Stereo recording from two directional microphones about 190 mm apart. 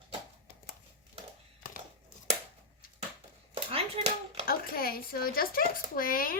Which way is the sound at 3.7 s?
35° right (ahead or behind).